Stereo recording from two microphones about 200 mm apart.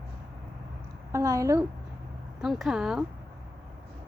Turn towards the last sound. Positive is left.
turn(degrees=0)  # may be behind; listen again after turning